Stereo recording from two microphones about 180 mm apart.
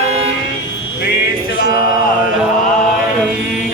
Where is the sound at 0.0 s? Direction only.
35° right (ahead or behind).